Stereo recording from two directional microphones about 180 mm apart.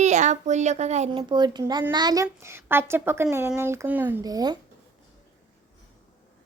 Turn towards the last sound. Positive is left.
turn(degrees=-20)  # may be behind; listen again after turning